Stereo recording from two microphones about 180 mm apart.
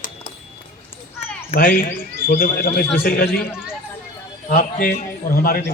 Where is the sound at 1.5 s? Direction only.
55° left (ahead or behind).